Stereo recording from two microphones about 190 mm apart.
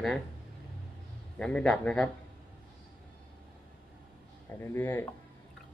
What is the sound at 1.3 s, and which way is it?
Speech, 5° left (ahead or behind).